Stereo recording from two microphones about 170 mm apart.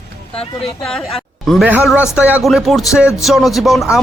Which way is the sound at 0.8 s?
5° left (ahead or behind).